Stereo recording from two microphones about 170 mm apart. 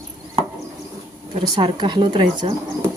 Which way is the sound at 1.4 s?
30° right (ahead or behind).